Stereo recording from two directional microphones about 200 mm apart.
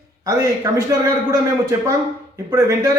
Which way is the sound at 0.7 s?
15° right (ahead or behind).